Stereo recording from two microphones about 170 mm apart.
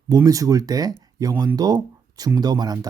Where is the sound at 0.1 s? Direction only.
20° right (ahead or behind).